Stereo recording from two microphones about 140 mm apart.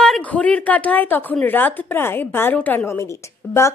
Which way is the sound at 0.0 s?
5° left (ahead or behind).